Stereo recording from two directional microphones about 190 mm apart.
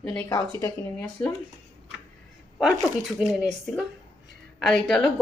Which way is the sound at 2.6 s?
Centre (ahead or behind).